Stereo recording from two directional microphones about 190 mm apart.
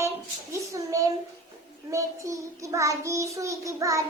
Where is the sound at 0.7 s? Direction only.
15° right (ahead or behind).